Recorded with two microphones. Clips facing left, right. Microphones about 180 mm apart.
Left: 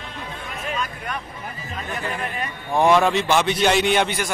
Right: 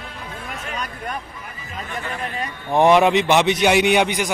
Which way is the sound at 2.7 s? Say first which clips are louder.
Right 3 dB; 20° right (ahead or behind).